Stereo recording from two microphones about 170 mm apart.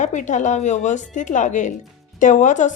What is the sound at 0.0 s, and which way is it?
A woman's voice, 45° left (ahead or behind).